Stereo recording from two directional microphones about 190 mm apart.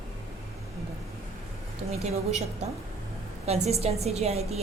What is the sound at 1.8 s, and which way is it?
Speech, 35° right (ahead or behind).